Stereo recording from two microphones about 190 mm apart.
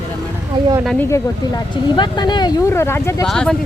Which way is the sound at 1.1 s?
20° left (ahead or behind).